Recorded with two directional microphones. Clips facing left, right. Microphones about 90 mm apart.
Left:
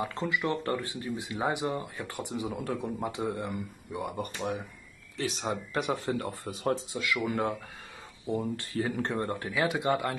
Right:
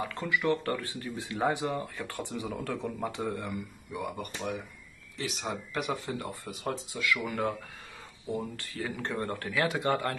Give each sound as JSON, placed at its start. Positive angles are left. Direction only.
{"t": 0.0, "sound": "speech", "side_deg": 25}